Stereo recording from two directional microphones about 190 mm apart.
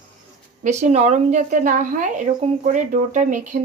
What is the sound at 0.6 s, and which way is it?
A woman's voice, 40° right (ahead or behind).